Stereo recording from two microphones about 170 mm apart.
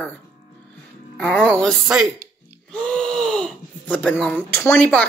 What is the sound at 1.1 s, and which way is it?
Speech, 5° left (ahead or behind).